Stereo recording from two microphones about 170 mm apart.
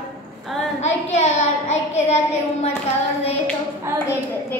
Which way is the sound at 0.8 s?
40° left (ahead or behind).